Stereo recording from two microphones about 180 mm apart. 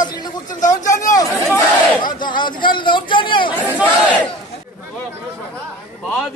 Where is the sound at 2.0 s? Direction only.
25° left (ahead or behind).